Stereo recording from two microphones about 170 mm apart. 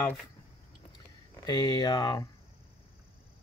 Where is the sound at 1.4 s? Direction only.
25° left (ahead or behind).